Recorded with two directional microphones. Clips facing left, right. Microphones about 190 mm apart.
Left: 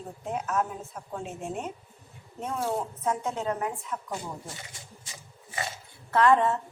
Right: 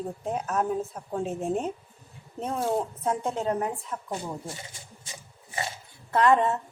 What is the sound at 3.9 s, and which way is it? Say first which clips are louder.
Speech: even; 30° right (ahead or behind).